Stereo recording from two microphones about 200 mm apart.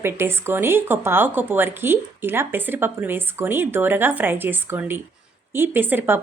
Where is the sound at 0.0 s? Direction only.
10° right (ahead or behind).